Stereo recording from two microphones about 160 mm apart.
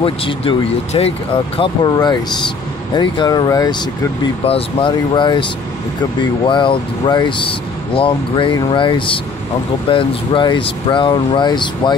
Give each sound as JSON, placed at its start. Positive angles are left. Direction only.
{"t": 0.0, "sound": "speech", "side_deg": 35}
{"t": 4.2, "sound": "speech", "side_deg": 35}